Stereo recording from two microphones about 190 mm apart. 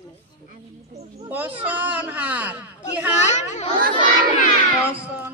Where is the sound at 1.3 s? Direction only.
10° right (ahead or behind).